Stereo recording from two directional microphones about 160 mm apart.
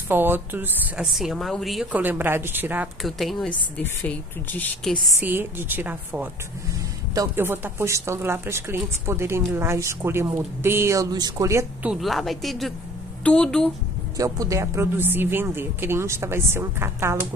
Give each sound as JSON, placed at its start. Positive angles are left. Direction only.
{"t": 0.1, "sound": "speech", "side_deg": -15}
{"t": 1.1, "sound": "speech", "side_deg": 0}
{"t": 3.0, "sound": "speech", "side_deg": 0}
{"t": 5.2, "sound": "speech", "side_deg": -10}
{"t": 11.8, "sound": "speech", "side_deg": -5}
{"t": 14.1, "sound": "speech", "side_deg": -20}